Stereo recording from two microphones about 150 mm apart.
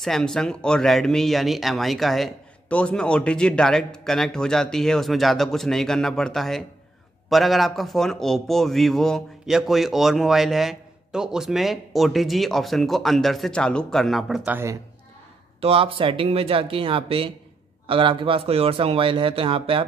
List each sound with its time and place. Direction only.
0.0 s a man's voice: 5° left (ahead or behind); by 14.8 s 15° right (ahead or behind)
15.6 s speech: 40° right (ahead or behind)